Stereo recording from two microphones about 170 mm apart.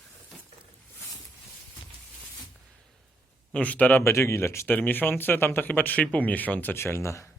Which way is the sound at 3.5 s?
10° left (ahead or behind).